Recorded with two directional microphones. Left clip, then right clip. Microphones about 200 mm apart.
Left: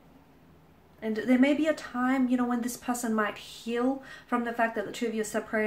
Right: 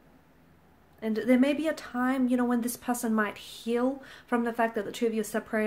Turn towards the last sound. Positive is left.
turn(degrees=-45)  # may be behind; listen again after turning